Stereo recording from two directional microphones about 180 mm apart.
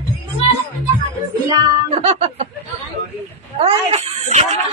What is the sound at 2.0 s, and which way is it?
Music, 40° right (ahead or behind).